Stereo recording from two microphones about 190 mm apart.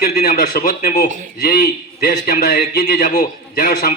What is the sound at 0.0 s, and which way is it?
A man's voice, 55° left (ahead or behind).